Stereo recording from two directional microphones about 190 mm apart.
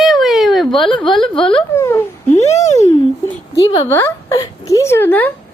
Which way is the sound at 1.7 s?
15° left (ahead or behind).